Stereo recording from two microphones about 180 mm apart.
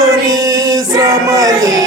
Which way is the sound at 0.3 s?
20° right (ahead or behind).